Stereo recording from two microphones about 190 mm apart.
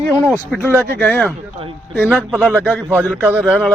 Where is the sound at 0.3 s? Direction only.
5° left (ahead or behind).